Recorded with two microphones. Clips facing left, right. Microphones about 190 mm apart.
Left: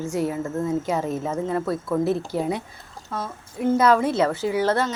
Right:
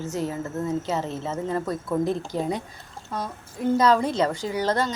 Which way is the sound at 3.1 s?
15° right (ahead or behind).